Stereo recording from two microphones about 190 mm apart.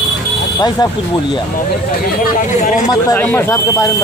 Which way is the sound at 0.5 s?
20° left (ahead or behind).